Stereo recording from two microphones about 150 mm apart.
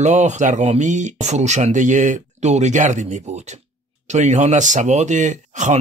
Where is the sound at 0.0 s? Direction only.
50° right (ahead or behind).